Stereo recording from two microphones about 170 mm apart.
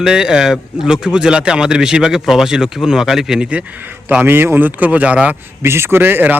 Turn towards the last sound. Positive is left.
turn(degrees=-10)  # may be behind; listen again after turning